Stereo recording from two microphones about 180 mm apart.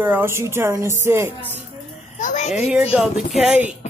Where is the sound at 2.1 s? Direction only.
45° left (ahead or behind).